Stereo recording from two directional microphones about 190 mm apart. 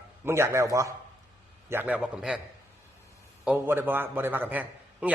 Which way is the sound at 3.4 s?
10° right (ahead or behind).